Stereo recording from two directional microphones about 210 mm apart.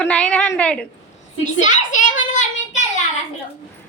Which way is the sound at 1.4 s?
35° left (ahead or behind).